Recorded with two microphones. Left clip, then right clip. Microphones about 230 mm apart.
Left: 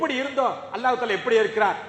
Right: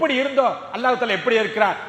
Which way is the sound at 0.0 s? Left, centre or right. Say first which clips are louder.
Right 5 dB; right.